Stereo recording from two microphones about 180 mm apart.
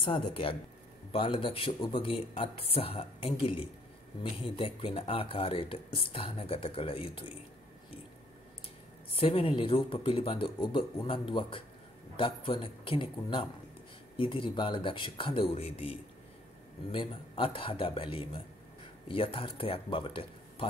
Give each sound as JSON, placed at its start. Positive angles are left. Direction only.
{"t": 0.0, "sound": "speech", "side_deg": 30}
{"t": 9.2, "sound": "speech", "side_deg": 30}